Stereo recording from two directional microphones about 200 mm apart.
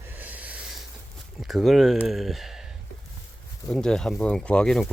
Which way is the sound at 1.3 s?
Centre (ahead or behind).